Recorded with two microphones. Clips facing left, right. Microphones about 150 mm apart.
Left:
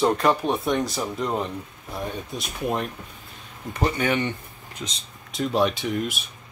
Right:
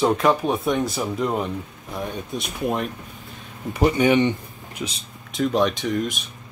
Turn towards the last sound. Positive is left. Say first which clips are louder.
# right 2 dB
turn(degrees=5)  # may be behind; listen again after turning